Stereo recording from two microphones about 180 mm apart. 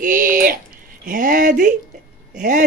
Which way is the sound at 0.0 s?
50° right (ahead or behind).